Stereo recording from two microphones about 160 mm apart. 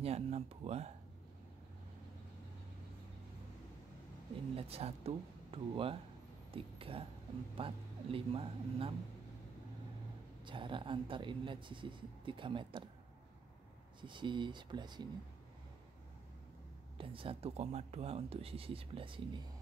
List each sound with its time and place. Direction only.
0.0 s speech: 40° right (ahead or behind)
4.6 s speech: 40° right (ahead or behind)
10.4 s speech: 30° right (ahead or behind)
14.0 s speech: 30° right (ahead or behind)
17.0 s speech: 35° right (ahead or behind)